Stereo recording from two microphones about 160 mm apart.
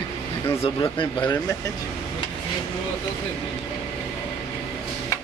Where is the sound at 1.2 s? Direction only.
15° left (ahead or behind).